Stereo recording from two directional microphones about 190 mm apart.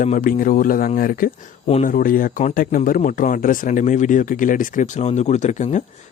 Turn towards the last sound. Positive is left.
turn(degrees=40)  # may be behind; listen again after turning